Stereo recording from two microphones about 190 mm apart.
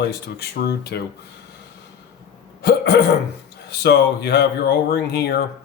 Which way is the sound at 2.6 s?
60° left (ahead or behind).